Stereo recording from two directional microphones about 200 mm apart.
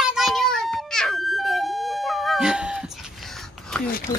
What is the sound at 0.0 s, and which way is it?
Ambulance, centre (ahead or behind).